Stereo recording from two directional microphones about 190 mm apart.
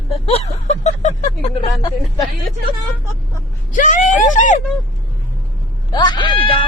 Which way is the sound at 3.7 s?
40° left (ahead or behind).